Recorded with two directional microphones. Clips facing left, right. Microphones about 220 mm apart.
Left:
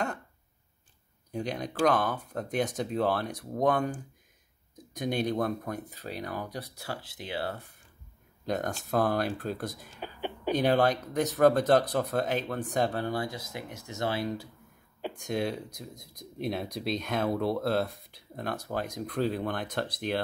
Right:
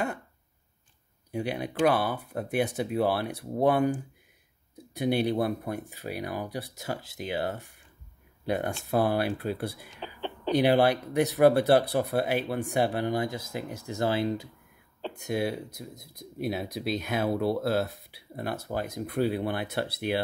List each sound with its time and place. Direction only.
1.3 s speech: 10° right (ahead or behind)
8.5 s speech: 10° right (ahead or behind)
9.9 s whispering: 10° left (ahead or behind)
10.5 s speech: 10° right (ahead or behind); by 14.4 s 25° right (ahead or behind)
15.1 s speech: 5° right (ahead or behind)